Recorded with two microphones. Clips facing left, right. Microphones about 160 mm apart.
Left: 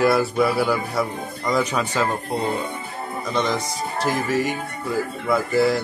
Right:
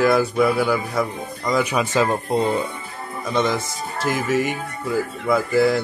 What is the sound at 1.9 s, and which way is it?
Speech, 20° right (ahead or behind).